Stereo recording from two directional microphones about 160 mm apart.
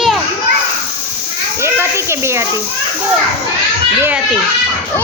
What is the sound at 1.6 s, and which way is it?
Speech, 15° right (ahead or behind).